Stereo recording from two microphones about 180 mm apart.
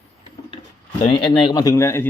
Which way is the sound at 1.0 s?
30° left (ahead or behind).